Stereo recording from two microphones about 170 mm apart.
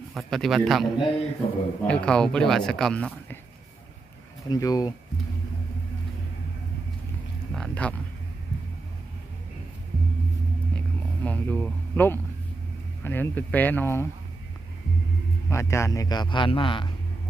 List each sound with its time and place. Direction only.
0.1 s speech: centre (ahead or behind)
1.4 s a man's voice: 35° left (ahead or behind)
1.9 s speech: 5° left (ahead or behind)
4.4 s a man's voice: 25° left (ahead or behind)
7.5 s speech: 5° left (ahead or behind)
10.8 s a sound: 10° left (ahead or behind)
13.1 s speech: 10° left (ahead or behind)
15.4 s a man's voice: 15° left (ahead or behind)